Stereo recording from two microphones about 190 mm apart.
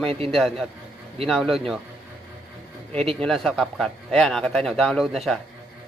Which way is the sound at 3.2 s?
Centre (ahead or behind).